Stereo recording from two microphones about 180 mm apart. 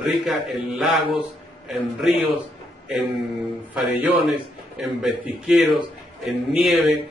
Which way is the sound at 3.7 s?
5° right (ahead or behind).